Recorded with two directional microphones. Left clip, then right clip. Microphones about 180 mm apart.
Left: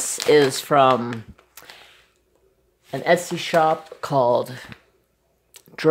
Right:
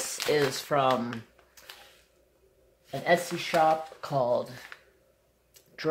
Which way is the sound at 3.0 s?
55° left (ahead or behind).